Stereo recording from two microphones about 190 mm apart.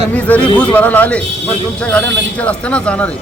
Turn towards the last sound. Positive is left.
turn(degrees=5)  # may be behind; listen again after turning